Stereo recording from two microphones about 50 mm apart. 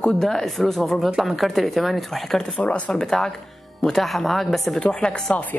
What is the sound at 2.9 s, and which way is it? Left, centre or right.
Speech, centre.